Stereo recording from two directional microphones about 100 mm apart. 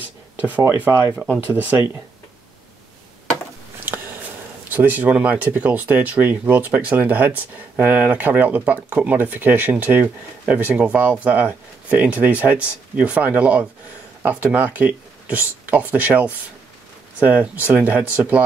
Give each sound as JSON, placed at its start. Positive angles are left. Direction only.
{"t": 0.4, "sound": "speech", "side_deg": -15}
{"t": 3.9, "sound": "a sound", "side_deg": -20}
{"t": 4.6, "sound": "speech", "side_deg": -15}